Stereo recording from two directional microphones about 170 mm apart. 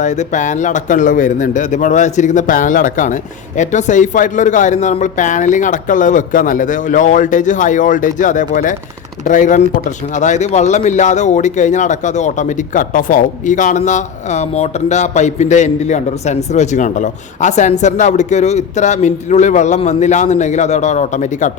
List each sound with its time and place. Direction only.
0.0 s speech: 45° left (ahead or behind)